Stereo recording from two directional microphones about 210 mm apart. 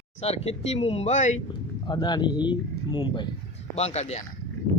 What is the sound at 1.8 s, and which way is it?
Speech, 20° left (ahead or behind).